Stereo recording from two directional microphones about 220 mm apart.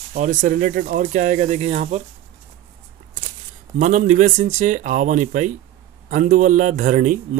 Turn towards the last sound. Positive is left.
turn(degrees=-35)  # may be behind; listen again after turning